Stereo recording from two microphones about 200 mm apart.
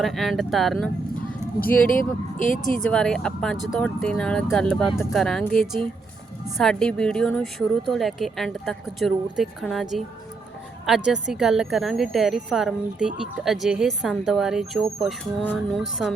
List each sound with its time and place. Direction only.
0.0 s a woman's voice: centre (ahead or behind)
2.7 s a woman's voice: 5° left (ahead or behind)